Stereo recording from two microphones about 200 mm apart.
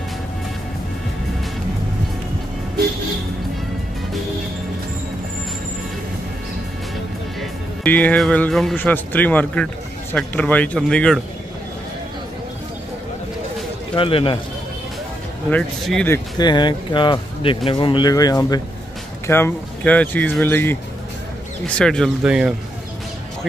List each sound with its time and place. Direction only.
7.3 s speech: 5° left (ahead or behind)
13.9 s speech: 25° left (ahead or behind)
15.5 s speech: 5° left (ahead or behind)
16.1 s speech: 20° left (ahead or behind); by 22.5 s 5° right (ahead or behind)